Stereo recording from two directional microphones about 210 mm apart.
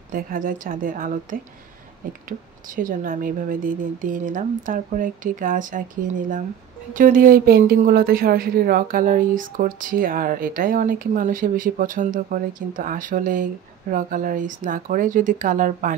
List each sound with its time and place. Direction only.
0.1 s speech: 40° right (ahead or behind)
2.2 s speech: 40° right (ahead or behind)